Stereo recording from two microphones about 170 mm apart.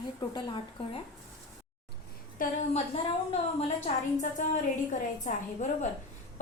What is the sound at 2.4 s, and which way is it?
A woman's voice, 40° left (ahead or behind).